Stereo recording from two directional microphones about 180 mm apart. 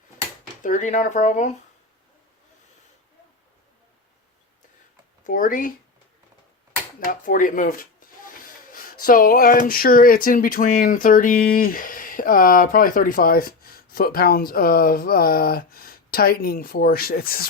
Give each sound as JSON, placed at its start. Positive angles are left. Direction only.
{"t": 0.6, "sound": "speech", "side_deg": 45}
{"t": 5.2, "sound": "speech", "side_deg": 50}
{"t": 7.1, "sound": "speech", "side_deg": 50}